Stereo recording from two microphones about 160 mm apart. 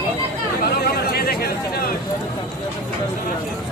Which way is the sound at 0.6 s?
70° left (ahead or behind).